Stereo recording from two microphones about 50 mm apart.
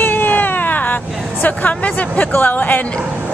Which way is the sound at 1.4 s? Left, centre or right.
Left.